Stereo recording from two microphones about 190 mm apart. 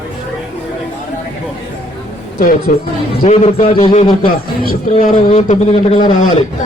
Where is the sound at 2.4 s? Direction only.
45° left (ahead or behind).